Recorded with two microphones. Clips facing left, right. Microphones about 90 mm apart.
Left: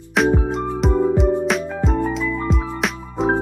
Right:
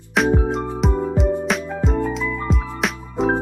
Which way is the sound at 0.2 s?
Centre (ahead or behind).